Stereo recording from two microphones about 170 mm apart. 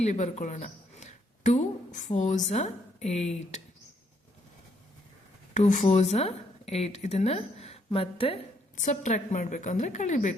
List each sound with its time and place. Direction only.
0.0 s speech: 40° left (ahead or behind)
5.5 s speech: 50° left (ahead or behind); by 8.4 s 35° left (ahead or behind)
8.7 s a woman's voice: 45° left (ahead or behind)